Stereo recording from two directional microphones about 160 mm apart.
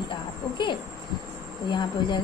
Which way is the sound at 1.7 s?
25° left (ahead or behind).